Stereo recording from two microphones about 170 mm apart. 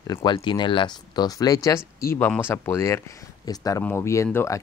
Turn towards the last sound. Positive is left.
turn(degrees=20)  # may be behind; listen again after turning